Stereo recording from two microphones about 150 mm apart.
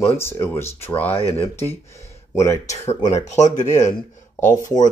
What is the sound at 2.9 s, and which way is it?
Speech, 45° left (ahead or behind).